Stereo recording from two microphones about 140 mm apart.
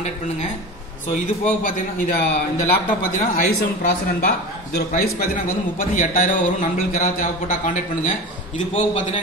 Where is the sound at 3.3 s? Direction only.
90° left; by 8.1 s 65° left (ahead or behind).